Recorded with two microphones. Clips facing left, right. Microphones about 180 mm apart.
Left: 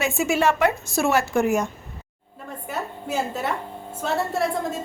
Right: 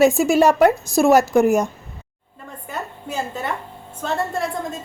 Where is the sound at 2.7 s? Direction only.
5° left (ahead or behind).